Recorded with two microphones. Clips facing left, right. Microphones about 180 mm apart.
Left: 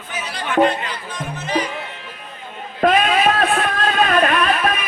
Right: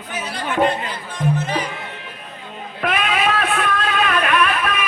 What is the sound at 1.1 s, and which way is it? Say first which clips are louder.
Music: right 5 dB; 55° right (ahead or behind).